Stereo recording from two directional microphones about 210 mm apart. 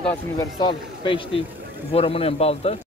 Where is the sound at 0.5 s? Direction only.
25° left (ahead or behind).